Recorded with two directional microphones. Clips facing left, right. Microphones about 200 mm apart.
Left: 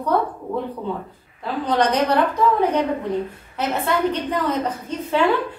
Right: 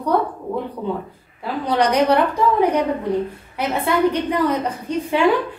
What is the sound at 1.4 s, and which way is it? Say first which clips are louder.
Speech: right 1 dB; 10° right (ahead or behind).